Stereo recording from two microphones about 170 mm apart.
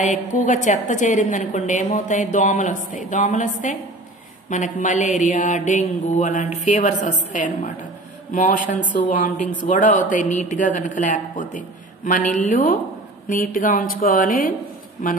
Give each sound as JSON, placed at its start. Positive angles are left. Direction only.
{"t": 0.0, "sound": "a woman's voice", "side_deg": 45}